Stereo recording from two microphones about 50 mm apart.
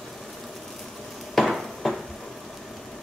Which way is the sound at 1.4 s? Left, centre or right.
Centre.